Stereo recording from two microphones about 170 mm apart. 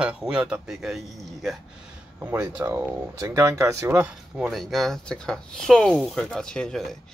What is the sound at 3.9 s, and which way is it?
Speech, 5° right (ahead or behind).